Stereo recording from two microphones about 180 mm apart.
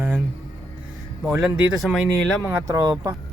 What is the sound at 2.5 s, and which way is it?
Speech, 15° right (ahead or behind).